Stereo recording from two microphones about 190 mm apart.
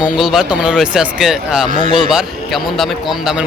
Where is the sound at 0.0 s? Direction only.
5° right (ahead or behind).